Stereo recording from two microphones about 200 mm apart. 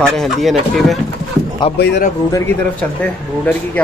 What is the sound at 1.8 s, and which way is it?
Speech, 55° left (ahead or behind).